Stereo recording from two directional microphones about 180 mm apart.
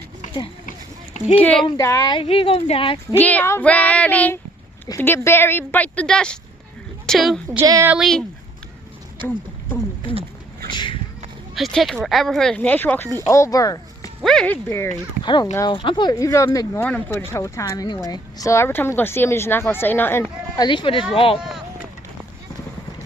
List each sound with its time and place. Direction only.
1.4 s a woman's voice: 10° left (ahead or behind)
1.6 s speech: 20° left (ahead or behind)
3.2 s a woman's voice: 10° left (ahead or behind)
7.5 s speech: 15° right (ahead or behind)
7.9 s speech: centre (ahead or behind)
9.2 s speech: 25° right (ahead or behind)
10.7 s a sound: 25° left (ahead or behind)
11.5 s speech: centre (ahead or behind); by 14.1 s 20° left (ahead or behind)
14.3 s a woman's voice: 5° left (ahead or behind)
15.2 s a woman's voice: 25° left (ahead or behind)
20.6 s speech: 25° left (ahead or behind)